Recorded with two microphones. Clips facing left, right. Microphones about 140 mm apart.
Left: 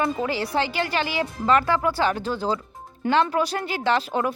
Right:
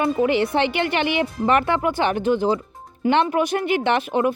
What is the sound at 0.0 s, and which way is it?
Speech, 20° right (ahead or behind).